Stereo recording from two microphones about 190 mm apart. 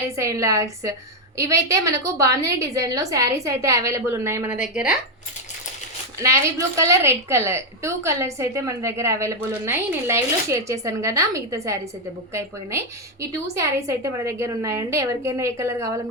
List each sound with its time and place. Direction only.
0.2 s a woman's voice: 15° right (ahead or behind)
6.1 s a woman's voice: 15° right (ahead or behind)